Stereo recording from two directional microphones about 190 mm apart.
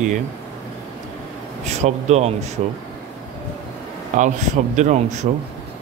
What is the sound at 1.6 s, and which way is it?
Speech, 35° right (ahead or behind).